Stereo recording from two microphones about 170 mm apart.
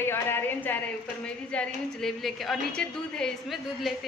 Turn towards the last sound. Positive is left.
turn(degrees=0)  # may be behind; listen again after turning